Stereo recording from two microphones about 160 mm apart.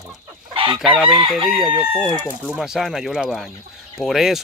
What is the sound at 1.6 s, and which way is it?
Crowing, 10° right (ahead or behind).